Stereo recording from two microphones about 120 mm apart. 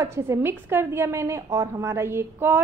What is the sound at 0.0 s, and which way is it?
A woman's voice, 25° right (ahead or behind).